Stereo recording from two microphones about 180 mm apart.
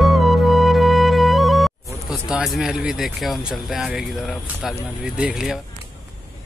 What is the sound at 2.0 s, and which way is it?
Speech, 5° right (ahead or behind).